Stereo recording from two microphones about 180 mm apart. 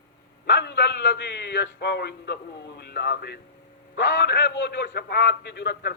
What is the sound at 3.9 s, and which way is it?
A man's voice, 75° left (ahead or behind).